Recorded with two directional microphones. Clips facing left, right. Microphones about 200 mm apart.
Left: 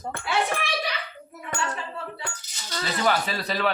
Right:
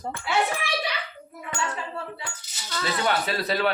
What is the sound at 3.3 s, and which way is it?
Speech, centre (ahead or behind).